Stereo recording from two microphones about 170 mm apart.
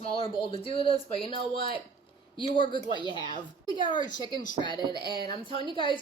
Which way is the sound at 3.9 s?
50° left (ahead or behind).